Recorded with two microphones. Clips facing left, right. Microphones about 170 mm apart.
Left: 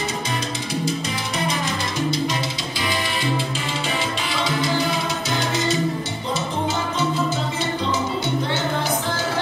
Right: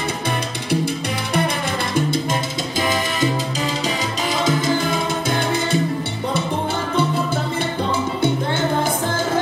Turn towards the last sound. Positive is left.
turn(degrees=-55)  # may be behind; listen again after turning